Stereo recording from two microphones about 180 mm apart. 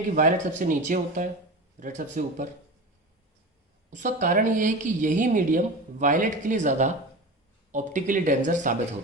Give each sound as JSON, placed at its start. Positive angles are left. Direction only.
{"t": 0.1, "sound": "a woman's voice", "side_deg": -50}
{"t": 3.8, "sound": "a woman's voice", "side_deg": -45}